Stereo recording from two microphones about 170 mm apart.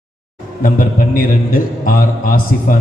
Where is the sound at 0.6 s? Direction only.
55° left (ahead or behind).